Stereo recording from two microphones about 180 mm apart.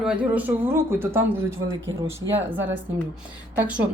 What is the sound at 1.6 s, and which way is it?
Speech, 90° right.